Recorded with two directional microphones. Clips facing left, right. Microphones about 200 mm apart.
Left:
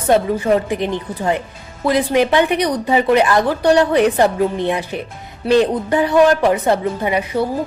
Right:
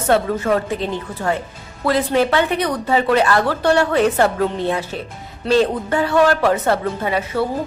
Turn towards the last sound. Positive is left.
turn(degrees=15)  # may be behind; listen again after turning